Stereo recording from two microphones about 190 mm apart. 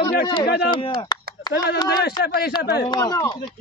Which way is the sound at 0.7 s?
25° left (ahead or behind).